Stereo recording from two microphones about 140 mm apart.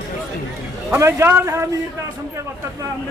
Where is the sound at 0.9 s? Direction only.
20° right (ahead or behind).